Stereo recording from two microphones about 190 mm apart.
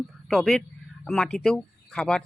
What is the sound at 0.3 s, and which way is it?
Speech, centre (ahead or behind).